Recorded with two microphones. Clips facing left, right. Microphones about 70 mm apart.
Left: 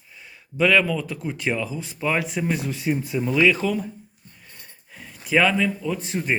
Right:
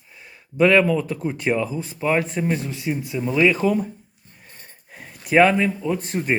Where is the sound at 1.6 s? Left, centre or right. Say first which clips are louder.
Right 4 dB; right.